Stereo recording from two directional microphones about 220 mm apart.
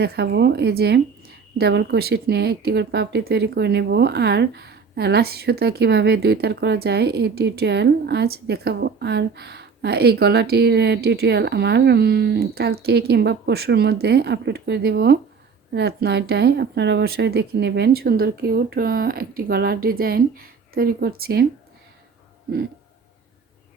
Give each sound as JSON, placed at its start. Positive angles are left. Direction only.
{"t": 0.0, "sound": "speech", "side_deg": -50}